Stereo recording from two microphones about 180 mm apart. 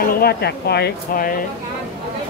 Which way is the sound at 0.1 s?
60° left (ahead or behind).